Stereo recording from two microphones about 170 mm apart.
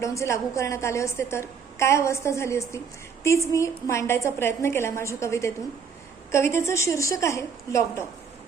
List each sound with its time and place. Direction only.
0.0 s a woman's voice: 15° left (ahead or behind)